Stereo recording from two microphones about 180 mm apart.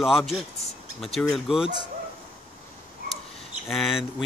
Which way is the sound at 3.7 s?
Centre (ahead or behind).